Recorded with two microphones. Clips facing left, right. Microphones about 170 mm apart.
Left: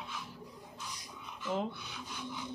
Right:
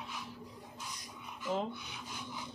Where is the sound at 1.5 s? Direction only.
Centre (ahead or behind).